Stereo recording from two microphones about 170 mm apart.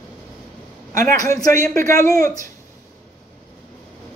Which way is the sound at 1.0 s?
20° left (ahead or behind).